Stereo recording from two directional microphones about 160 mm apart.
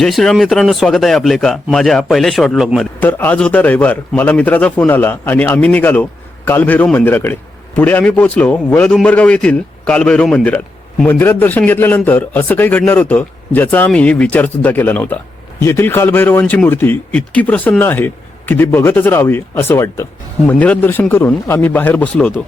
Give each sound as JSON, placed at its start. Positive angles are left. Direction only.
{"t": 0.0, "sound": "a man's voice", "side_deg": 0}
{"t": 3.0, "sound": "a man's voice", "side_deg": 10}